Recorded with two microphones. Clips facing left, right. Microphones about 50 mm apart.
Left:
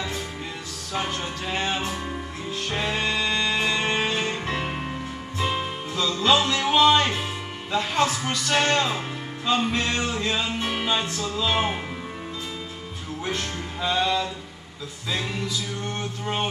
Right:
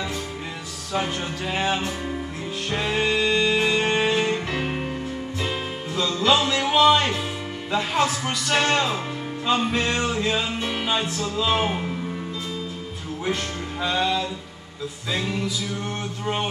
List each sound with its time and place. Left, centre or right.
0.9 s speech: centre
2.7 s music: centre
6.1 s music: centre
6.6 s music: centre
7.7 s speech: centre
10.6 s music: left
11.5 s music: centre
13.2 s music: centre